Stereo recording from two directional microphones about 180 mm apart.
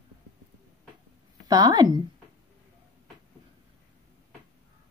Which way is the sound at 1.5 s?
20° right (ahead or behind).